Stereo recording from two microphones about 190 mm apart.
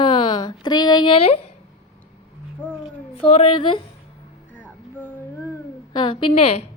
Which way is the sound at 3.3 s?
30° left (ahead or behind).